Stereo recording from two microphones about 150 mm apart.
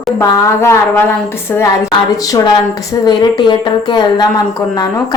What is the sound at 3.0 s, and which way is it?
A woman's voice, 30° left (ahead or behind).